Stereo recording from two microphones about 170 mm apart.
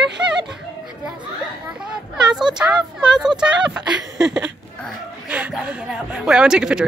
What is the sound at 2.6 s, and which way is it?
A woman's voice, 15° right (ahead or behind).